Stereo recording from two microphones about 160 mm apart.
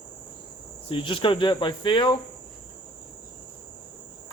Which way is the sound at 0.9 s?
35° left (ahead or behind).